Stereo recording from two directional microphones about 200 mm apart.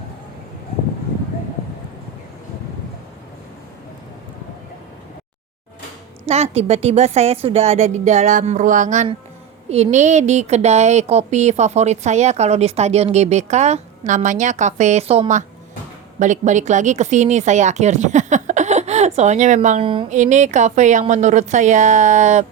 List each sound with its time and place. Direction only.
6.2 s speech: 30° right (ahead or behind)
19.8 s speech: 25° right (ahead or behind)
20.1 s speech: 35° right (ahead or behind)